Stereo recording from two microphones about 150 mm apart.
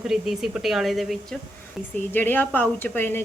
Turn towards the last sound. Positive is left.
turn(degrees=15)  # may be behind; listen again after turning